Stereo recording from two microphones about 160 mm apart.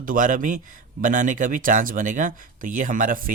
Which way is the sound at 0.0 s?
55° right (ahead or behind).